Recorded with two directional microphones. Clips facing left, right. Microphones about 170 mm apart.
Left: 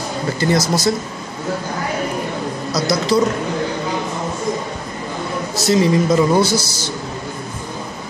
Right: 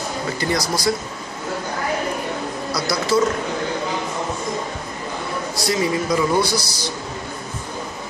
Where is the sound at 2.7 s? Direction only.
20° left (ahead or behind).